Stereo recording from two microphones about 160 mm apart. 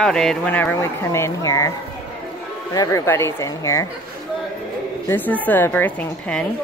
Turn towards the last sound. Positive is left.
turn(degrees=10)  # may be behind; listen again after turning